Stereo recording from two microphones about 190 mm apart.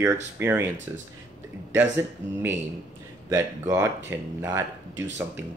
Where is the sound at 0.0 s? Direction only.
10° right (ahead or behind).